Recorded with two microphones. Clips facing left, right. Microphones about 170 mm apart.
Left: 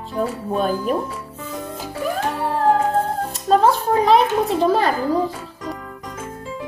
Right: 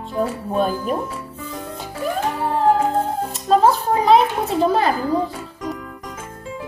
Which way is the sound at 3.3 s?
Centre (ahead or behind).